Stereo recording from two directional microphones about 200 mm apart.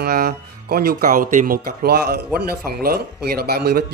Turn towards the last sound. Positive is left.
turn(degrees=-50)  # may be behind; listen again after turning